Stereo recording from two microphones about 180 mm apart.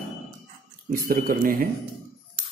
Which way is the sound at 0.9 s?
55° right (ahead or behind).